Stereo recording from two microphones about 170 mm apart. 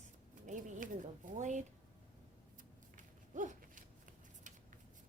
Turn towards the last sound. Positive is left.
turn(degrees=-45)  # may be behind; listen again after turning